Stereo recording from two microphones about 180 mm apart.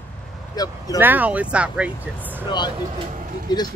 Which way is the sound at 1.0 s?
10° right (ahead or behind).